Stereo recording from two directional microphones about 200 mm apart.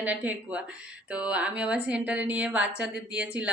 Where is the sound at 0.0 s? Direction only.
5° right (ahead or behind).